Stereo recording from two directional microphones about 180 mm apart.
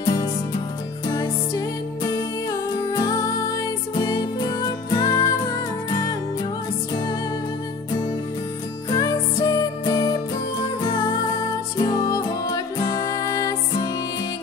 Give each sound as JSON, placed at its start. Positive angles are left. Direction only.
{"t": 0.0, "sound": "music", "side_deg": 25}
{"t": 2.9, "sound": "music", "side_deg": 20}
{"t": 8.9, "sound": "music", "side_deg": 20}